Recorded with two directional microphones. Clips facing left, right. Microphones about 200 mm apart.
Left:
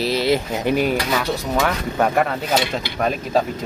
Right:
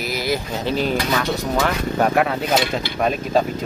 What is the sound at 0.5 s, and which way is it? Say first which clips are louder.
Speech: left 3 dB; 15° left (ahead or behind).